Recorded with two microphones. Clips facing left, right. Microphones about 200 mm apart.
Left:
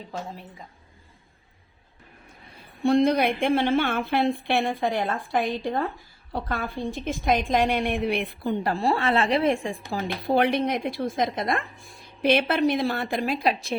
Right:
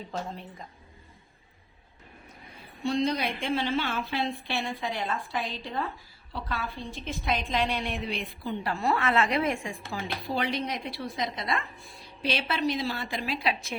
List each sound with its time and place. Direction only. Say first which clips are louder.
0.1 s a woman's voice: left 1 dB; 5° left (ahead or behind)
2.8 s a woman's voice: left 7 dB; 55° left (ahead or behind)
8.6 s a woman's voice: left 2 dB; 35° left (ahead or behind)
10.2 s a woman's voice: left 9 dB; 60° left (ahead or behind); by 13.7 s 40° left (ahead or behind)